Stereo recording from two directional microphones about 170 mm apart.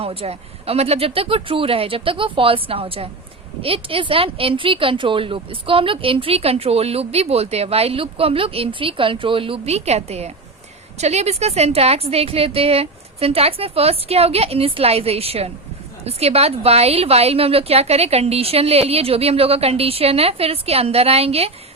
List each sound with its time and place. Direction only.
0.0 s speech: 35° right (ahead or behind)